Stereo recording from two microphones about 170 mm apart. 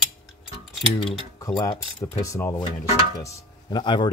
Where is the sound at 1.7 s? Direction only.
25° left (ahead or behind).